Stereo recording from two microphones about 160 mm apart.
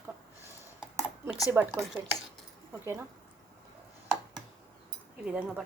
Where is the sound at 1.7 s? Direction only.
Centre (ahead or behind).